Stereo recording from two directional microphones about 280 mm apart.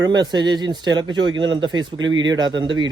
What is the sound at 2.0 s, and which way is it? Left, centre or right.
Speech, right.